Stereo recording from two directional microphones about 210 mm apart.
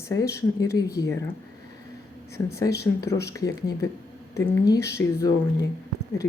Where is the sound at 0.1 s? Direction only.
15° left (ahead or behind).